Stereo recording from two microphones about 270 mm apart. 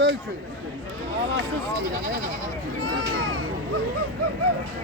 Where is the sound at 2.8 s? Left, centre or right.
Right.